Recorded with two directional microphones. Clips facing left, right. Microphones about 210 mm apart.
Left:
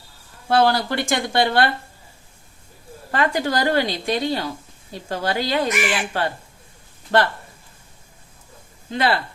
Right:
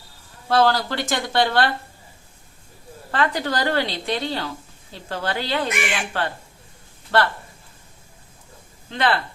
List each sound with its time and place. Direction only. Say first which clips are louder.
0.4 s a woman's voice: left 1 dB; 15° left (ahead or behind)
3.1 s a woman's voice: left 2 dB; 15° left (ahead or behind)
8.9 s a woman's voice: left 1 dB; 10° left (ahead or behind)